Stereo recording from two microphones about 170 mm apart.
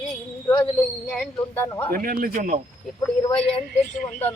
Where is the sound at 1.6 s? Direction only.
10° left (ahead or behind).